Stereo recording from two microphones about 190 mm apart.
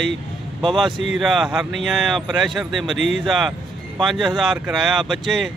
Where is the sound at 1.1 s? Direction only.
Centre (ahead or behind).